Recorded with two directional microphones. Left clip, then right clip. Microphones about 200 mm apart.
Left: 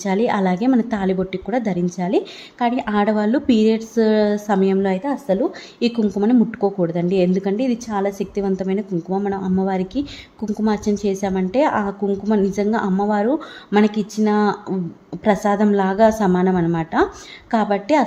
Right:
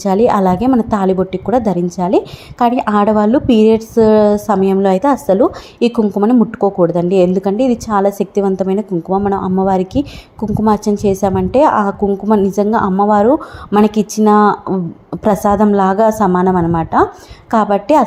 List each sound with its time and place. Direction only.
0.0 s a woman's voice: 10° right (ahead or behind)